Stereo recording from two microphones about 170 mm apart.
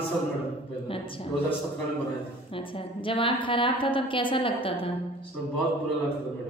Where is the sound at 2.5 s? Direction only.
30° left (ahead or behind).